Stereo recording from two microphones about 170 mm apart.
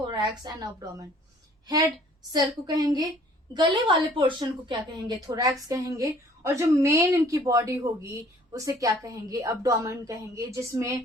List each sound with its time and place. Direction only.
0.0 s a woman's voice: 25° right (ahead or behind)